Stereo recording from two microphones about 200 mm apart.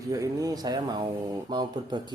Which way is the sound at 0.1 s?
15° right (ahead or behind).